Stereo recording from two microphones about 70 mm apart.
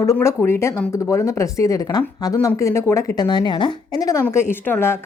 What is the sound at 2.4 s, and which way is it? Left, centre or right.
Speech, left.